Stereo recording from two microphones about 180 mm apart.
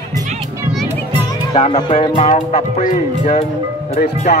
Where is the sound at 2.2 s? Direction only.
40° left (ahead or behind).